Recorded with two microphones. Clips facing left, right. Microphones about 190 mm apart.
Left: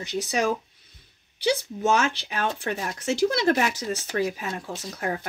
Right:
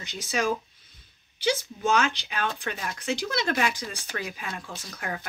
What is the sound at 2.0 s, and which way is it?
Speech, 35° left (ahead or behind).